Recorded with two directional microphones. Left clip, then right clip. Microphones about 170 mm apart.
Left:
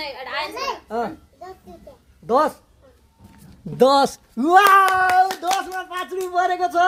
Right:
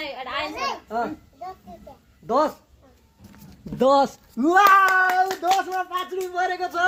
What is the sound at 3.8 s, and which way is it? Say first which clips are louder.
Speech: left 3 dB; 90° left.